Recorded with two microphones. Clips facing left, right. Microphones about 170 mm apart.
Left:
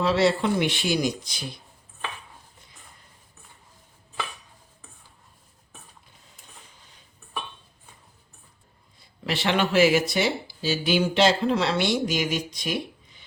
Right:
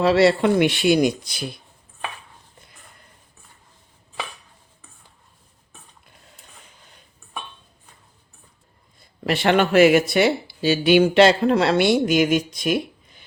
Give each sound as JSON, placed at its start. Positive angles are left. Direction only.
{"t": 0.0, "sound": "speech", "side_deg": -70}
{"t": 9.0, "sound": "speech", "side_deg": -55}
{"t": 12.6, "sound": "a sound", "side_deg": -55}